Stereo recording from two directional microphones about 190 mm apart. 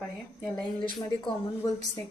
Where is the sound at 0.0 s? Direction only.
5° left (ahead or behind).